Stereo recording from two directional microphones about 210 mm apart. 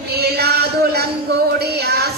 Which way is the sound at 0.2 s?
50° right (ahead or behind).